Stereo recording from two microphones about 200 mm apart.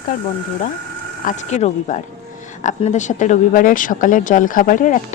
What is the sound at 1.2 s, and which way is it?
Speech, 40° left (ahead or behind).